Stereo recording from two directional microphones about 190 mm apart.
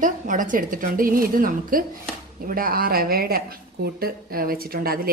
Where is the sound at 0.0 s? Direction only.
45° right (ahead or behind).